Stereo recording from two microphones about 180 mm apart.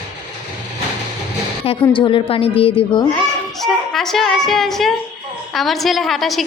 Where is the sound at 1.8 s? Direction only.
25° left (ahead or behind).